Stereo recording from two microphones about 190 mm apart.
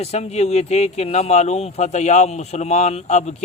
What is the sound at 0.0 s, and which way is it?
Speech, 35° left (ahead or behind).